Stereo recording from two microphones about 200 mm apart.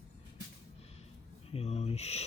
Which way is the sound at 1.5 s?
30° left (ahead or behind).